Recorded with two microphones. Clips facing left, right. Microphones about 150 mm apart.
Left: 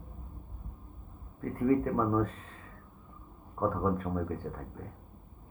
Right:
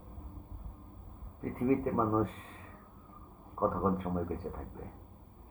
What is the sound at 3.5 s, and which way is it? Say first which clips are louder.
Speech: left 1 dB; 15° right (ahead or behind).